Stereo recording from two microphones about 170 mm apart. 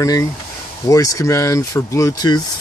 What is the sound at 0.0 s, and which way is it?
Speech, 20° left (ahead or behind).